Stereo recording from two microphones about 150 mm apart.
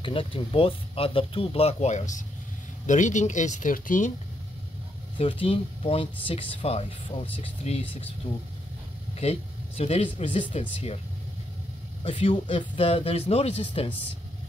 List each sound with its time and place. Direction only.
0.0 s speech: 35° left (ahead or behind); by 4.1 s 60° left (ahead or behind)
5.1 s speech: 35° left (ahead or behind)
9.2 s speech: 45° left (ahead or behind)
12.0 s speech: 35° left (ahead or behind)